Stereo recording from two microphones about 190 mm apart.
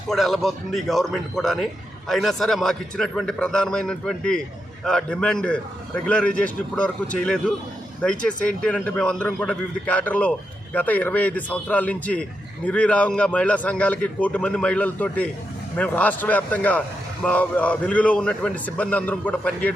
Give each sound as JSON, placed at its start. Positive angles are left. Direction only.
{"t": 0.1, "sound": "a man's voice", "side_deg": 0}